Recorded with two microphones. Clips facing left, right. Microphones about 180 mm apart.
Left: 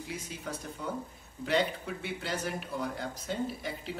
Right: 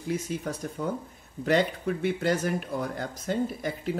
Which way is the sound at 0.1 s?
45° right (ahead or behind).